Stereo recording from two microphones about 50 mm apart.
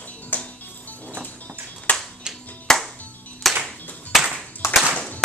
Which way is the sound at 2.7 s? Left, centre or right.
Centre.